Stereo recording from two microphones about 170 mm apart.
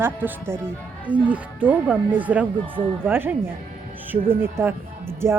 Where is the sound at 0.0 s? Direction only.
10° right (ahead or behind).